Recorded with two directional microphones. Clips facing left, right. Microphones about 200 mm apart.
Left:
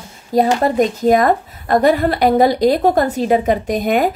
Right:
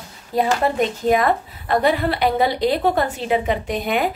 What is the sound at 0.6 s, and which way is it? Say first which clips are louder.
A woman's voice: left 5 dB; 40° left (ahead or behind).